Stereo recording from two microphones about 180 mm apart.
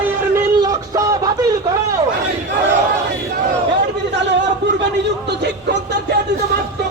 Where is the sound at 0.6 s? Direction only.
20° right (ahead or behind).